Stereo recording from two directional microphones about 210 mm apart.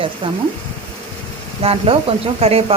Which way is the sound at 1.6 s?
25° right (ahead or behind).